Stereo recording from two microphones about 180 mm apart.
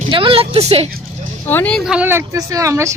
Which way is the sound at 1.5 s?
10° left (ahead or behind).